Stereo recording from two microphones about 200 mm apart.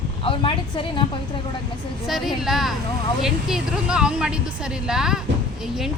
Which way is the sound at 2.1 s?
Centre (ahead or behind).